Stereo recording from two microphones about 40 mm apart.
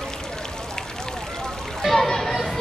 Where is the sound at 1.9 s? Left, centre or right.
Centre.